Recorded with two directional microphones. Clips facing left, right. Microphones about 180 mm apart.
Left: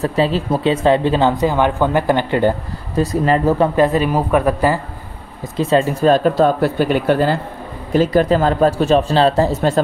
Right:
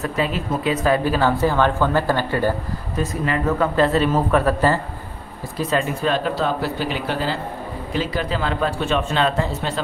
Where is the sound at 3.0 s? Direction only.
35° left (ahead or behind).